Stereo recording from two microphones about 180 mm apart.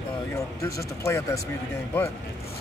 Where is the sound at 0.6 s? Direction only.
15° left (ahead or behind).